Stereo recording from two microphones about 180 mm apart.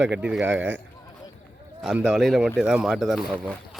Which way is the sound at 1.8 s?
5° right (ahead or behind).